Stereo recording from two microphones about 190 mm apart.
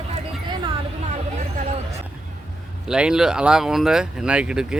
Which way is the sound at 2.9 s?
5° right (ahead or behind).